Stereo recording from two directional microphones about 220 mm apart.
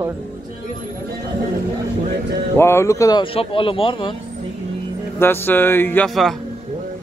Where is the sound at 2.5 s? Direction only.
10° left (ahead or behind).